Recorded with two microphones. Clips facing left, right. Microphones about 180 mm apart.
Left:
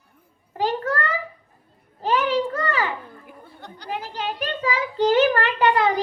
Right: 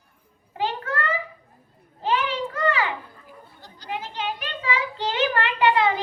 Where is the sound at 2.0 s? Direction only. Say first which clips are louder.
Left 4 dB; 40° left (ahead or behind).